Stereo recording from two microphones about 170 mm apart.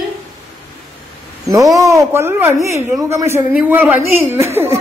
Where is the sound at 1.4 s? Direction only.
20° right (ahead or behind).